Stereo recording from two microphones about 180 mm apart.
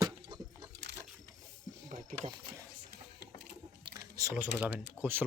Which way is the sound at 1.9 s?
40° right (ahead or behind).